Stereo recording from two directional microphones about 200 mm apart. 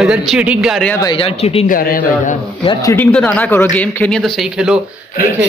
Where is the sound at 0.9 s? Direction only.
20° left (ahead or behind).